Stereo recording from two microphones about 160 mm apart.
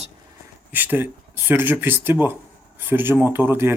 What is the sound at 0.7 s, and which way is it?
Speech, 10° right (ahead or behind).